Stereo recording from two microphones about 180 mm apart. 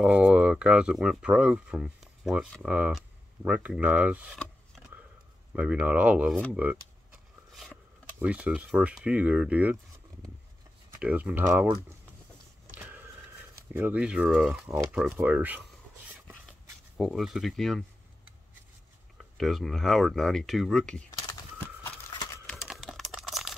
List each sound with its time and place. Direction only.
0.0 s speech: 5° right (ahead or behind)
5.6 s speech: 5° right (ahead or behind)
11.0 s speech: 10° right (ahead or behind)
12.7 s a sound: 10° right (ahead or behind)
13.7 s speech: 10° right (ahead or behind)
16.9 s speech: centre (ahead or behind)
19.1 s speech: centre (ahead or behind)
21.1 s a sound: 20° left (ahead or behind)
21.8 s horse: 15° left (ahead or behind)
22.7 s computer keyboard: centre (ahead or behind)